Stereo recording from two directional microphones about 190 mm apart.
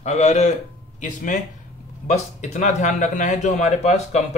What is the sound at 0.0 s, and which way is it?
A man's voice, 35° left (ahead or behind).